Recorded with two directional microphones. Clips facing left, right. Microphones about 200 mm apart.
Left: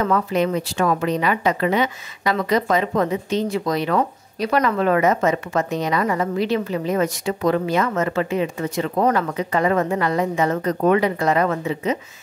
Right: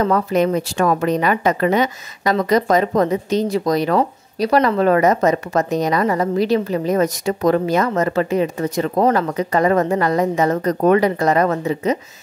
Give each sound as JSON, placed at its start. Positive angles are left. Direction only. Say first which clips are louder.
{"t": 0.0, "sound": "speech", "louder": "right 3 dB", "side_deg": -40}